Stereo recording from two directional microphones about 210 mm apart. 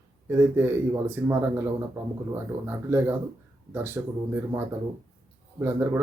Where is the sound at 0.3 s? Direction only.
10° right (ahead or behind).